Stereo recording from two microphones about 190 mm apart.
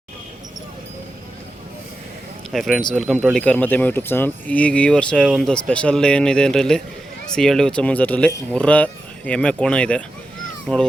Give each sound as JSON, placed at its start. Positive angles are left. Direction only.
{"t": 2.5, "sound": "speech", "side_deg": 0}